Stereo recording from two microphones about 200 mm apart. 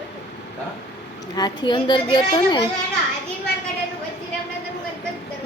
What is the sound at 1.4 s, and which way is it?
Speech, 20° left (ahead or behind).